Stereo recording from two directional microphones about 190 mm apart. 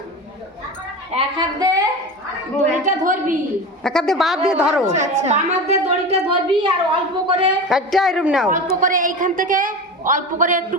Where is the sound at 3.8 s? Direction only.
5° left (ahead or behind).